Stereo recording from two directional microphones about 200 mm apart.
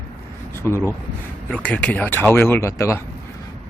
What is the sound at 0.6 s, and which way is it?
Speech, 10° left (ahead or behind).